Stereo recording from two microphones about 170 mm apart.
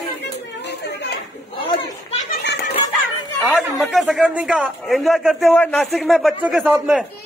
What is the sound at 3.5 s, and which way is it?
A man's voice, centre (ahead or behind).